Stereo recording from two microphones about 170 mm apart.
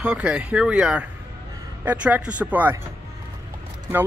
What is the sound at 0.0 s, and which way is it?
Speech, 5° right (ahead or behind).